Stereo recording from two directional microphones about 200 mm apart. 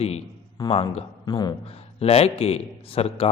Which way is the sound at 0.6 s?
30° left (ahead or behind).